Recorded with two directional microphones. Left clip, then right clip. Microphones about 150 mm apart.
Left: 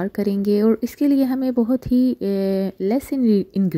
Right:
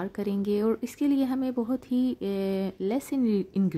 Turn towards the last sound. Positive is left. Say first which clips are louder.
# left 8 dB
turn(degrees=35)  # may be behind; listen again after turning